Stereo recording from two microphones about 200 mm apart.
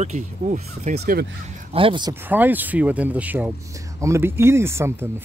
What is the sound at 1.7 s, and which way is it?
Speech, 25° right (ahead or behind).